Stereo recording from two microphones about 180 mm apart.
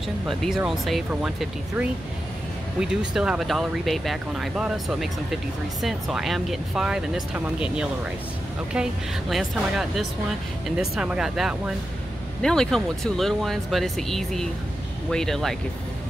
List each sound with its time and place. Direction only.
0.3 s speech: centre (ahead or behind)